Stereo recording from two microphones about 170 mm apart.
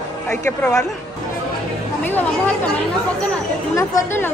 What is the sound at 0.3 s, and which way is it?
Speech, 10° left (ahead or behind).